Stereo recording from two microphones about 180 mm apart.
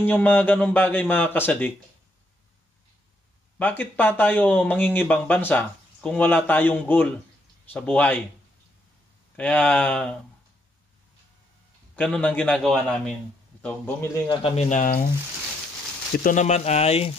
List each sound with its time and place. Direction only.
0.0 s speech: 10° left (ahead or behind)
3.5 s speech: 10° left (ahead or behind)
9.4 s speech: 5° left (ahead or behind)
11.9 s speech: 10° left (ahead or behind)
14.2 s a man's voice: 25° left (ahead or behind)
14.6 s speech: 45° left (ahead or behind)
16.3 s speech: 40° left (ahead or behind)